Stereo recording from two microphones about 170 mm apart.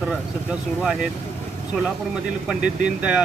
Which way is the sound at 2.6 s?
45° right (ahead or behind).